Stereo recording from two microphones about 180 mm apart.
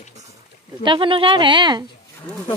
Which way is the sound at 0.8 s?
30° right (ahead or behind).